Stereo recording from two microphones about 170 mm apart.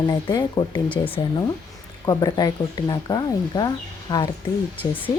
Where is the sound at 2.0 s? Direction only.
20° left (ahead or behind).